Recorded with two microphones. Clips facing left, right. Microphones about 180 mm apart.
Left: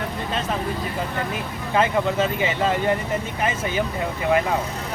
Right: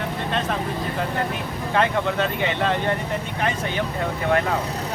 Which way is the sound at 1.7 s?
5° left (ahead or behind).